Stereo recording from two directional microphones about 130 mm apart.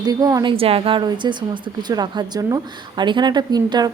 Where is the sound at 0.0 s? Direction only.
30° right (ahead or behind).